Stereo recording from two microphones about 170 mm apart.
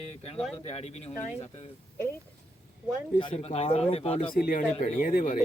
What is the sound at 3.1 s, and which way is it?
Speech, 35° left (ahead or behind).